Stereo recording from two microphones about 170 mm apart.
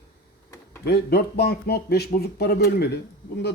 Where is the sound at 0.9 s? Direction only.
70° left (ahead or behind).